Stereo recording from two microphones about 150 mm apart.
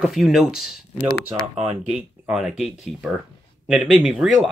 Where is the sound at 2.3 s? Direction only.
Centre (ahead or behind).